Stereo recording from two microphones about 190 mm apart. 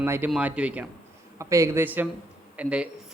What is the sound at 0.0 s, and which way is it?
Speech, 10° right (ahead or behind).